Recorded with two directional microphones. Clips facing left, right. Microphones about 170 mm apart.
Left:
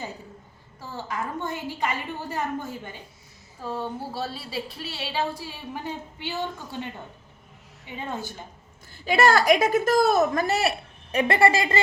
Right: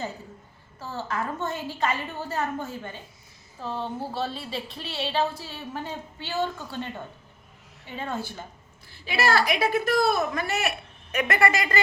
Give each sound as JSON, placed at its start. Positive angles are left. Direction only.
{"t": 0.8, "sound": "a woman's voice", "side_deg": 15}
{"t": 7.9, "sound": "a woman's voice", "side_deg": 15}
{"t": 9.0, "sound": "a woman's voice", "side_deg": 50}